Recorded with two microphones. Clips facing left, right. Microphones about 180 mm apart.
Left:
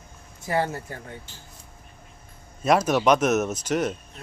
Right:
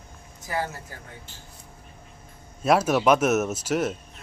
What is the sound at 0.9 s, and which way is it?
Speech, 25° left (ahead or behind).